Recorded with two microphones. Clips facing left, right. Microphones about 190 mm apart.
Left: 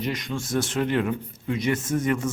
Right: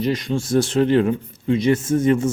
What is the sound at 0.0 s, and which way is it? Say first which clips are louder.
Speech: right 7 dB; 30° right (ahead or behind).